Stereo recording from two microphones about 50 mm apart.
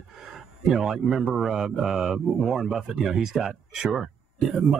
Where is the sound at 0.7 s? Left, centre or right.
Centre.